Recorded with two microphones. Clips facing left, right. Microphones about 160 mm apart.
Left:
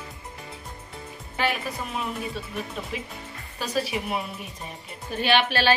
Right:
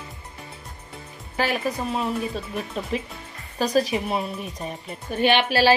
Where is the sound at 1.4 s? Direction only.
40° right (ahead or behind).